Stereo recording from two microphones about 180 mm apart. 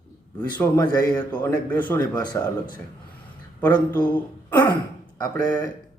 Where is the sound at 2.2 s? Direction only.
25° left (ahead or behind).